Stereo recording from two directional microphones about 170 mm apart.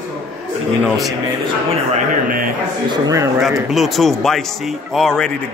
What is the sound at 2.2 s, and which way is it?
Speech, 55° right (ahead or behind).